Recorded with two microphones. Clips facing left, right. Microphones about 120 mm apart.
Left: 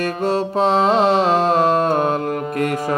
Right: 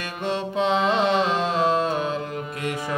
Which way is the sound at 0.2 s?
40° left (ahead or behind).